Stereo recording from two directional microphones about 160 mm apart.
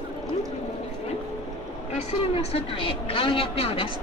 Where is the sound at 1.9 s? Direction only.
40° left (ahead or behind).